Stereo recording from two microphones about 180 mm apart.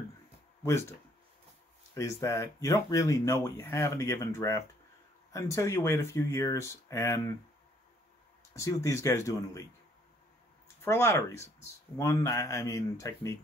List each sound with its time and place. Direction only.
0.7 s speech: 15° left (ahead or behind)
2.0 s speech: 20° left (ahead or behind)
8.5 s speech: 15° left (ahead or behind)
10.8 s speech: 15° left (ahead or behind)